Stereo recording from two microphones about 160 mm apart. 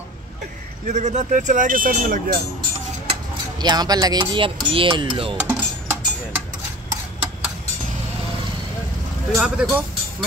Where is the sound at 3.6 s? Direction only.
25° right (ahead or behind).